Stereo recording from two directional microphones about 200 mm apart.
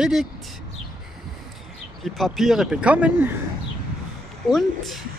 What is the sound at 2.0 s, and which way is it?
Speech, centre (ahead or behind).